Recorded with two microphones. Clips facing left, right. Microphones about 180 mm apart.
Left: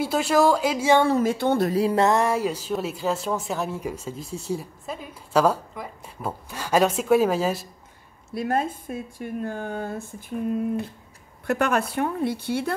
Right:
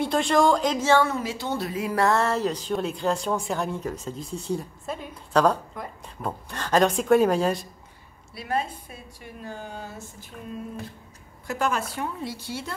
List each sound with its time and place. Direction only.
0.0 s speech: 5° left (ahead or behind)
1.2 s a woman's voice: 55° left (ahead or behind)
1.7 s a sound: 35° left (ahead or behind)
2.0 s speech: 15° left (ahead or behind)
8.4 s a woman's voice: 50° left (ahead or behind)
11.4 s a woman's voice: 60° left (ahead or behind)